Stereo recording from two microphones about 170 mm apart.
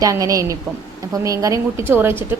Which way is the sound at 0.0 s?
20° right (ahead or behind).